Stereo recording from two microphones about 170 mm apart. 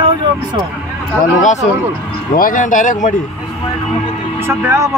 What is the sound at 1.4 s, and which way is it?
Speech, 45° left (ahead or behind).